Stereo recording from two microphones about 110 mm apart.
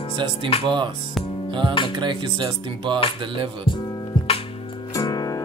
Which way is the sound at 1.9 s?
45° right (ahead or behind).